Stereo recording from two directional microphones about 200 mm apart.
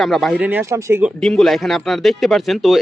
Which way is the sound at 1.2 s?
Centre (ahead or behind).